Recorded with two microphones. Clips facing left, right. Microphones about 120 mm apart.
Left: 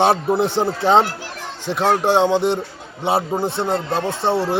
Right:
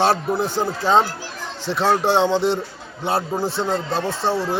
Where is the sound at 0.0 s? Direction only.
20° left (ahead or behind).